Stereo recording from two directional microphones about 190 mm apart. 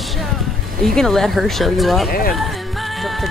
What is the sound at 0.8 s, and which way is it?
Speech, centre (ahead or behind).